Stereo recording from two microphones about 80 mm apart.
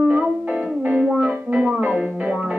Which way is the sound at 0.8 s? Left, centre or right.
Centre.